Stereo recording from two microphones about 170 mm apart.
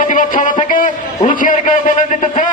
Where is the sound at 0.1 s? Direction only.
50° left (ahead or behind).